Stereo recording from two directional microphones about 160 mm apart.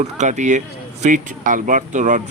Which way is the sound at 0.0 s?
50° right (ahead or behind).